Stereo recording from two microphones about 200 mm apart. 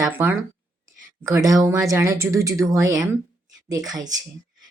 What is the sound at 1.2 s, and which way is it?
Speech, 15° right (ahead or behind).